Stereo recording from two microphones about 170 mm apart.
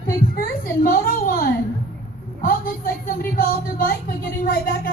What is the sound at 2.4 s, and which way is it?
Speech, 55° left (ahead or behind).